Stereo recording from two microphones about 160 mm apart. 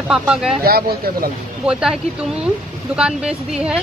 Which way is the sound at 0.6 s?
70° right (ahead or behind).